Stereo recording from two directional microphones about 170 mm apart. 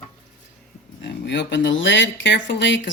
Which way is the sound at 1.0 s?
90° left.